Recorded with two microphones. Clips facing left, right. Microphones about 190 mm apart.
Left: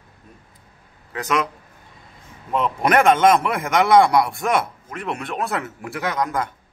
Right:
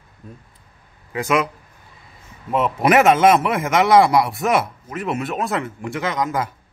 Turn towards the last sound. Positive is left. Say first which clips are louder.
# right 1 dB
turn(degrees=0)  # may be behind; listen again after turning